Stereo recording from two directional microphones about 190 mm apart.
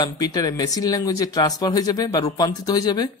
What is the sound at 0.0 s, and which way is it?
Speech, 20° left (ahead or behind).